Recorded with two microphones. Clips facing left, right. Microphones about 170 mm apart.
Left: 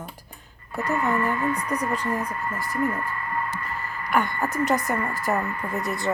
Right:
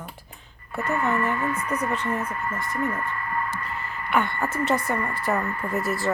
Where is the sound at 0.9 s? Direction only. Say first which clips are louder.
Even; 15° left (ahead or behind).